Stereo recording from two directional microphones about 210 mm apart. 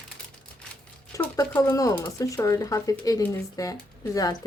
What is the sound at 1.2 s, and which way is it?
Speech, 15° left (ahead or behind).